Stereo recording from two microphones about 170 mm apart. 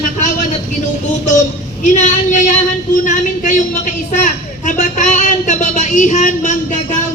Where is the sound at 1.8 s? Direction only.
45° left (ahead or behind).